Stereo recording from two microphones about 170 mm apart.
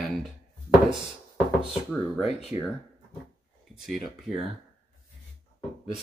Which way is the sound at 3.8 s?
Centre (ahead or behind).